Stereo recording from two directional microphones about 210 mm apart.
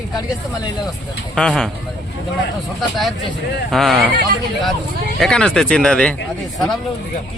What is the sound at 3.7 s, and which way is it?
Speech, centre (ahead or behind).